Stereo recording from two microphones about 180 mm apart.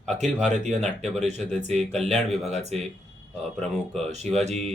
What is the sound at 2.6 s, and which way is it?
Speech, 35° right (ahead or behind).